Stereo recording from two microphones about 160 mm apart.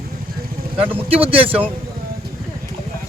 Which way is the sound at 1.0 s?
35° right (ahead or behind).